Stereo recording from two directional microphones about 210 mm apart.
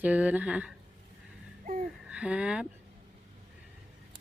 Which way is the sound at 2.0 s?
5° right (ahead or behind).